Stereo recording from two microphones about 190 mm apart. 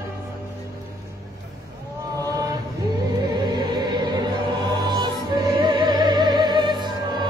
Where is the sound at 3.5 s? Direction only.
20° right (ahead or behind).